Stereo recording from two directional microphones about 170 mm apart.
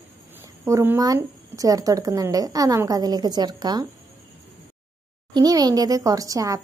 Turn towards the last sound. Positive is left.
turn(degrees=-20)  # may be behind; listen again after turning